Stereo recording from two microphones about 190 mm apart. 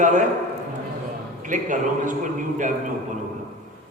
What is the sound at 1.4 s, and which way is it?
A man's voice, 40° right (ahead or behind).